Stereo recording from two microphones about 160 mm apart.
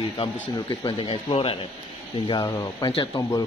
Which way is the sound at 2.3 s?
20° left (ahead or behind).